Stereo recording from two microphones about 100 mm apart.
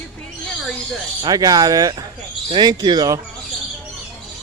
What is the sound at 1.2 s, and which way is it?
Speech, 40° right (ahead or behind).